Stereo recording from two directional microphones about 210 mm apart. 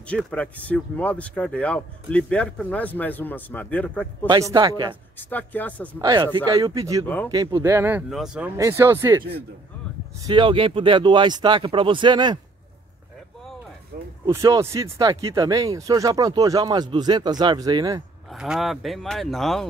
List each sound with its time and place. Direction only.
0.0 s speech: 5° left (ahead or behind)
4.3 s speech: 20° right (ahead or behind)
5.1 s speech: 10° left (ahead or behind)
5.9 s speech: 20° right (ahead or behind); by 8.5 s centre (ahead or behind)
8.5 s speech: 15° right (ahead or behind)
10.2 s speech: 25° right (ahead or behind)
14.2 s speech: 15° right (ahead or behind)
18.3 s speech: centre (ahead or behind)